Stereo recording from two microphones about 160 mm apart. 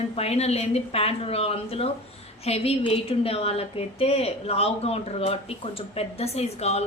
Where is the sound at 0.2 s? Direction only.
40° left (ahead or behind).